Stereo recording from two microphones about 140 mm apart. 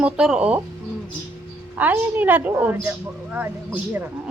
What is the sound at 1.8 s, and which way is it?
Speech, 10° right (ahead or behind).